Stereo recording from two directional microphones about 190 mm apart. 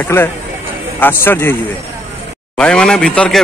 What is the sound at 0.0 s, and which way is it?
A man's voice, 10° left (ahead or behind).